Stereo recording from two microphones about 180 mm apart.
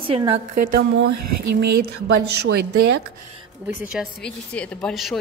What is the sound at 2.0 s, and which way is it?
Speech, 65° right (ahead or behind).